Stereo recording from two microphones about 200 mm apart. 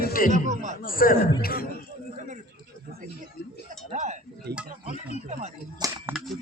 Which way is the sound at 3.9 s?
35° right (ahead or behind).